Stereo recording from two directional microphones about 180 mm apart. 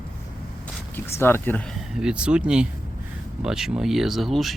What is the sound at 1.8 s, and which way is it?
Speech, 5° right (ahead or behind).